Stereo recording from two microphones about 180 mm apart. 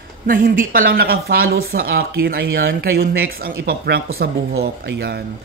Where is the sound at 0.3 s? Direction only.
50° right (ahead or behind).